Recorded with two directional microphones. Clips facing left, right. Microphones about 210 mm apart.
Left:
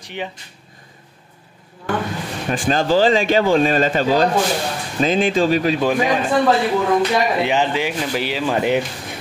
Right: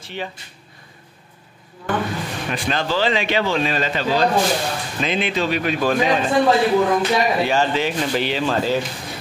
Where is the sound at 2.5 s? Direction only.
40° left (ahead or behind).